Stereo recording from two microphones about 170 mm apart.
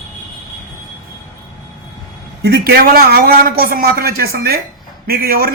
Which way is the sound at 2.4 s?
70° right (ahead or behind).